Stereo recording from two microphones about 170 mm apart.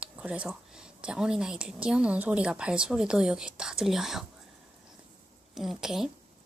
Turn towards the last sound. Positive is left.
turn(degrees=-5)  # may be behind; listen again after turning